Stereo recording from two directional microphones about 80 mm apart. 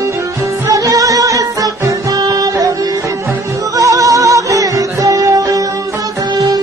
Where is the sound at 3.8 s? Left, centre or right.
Right.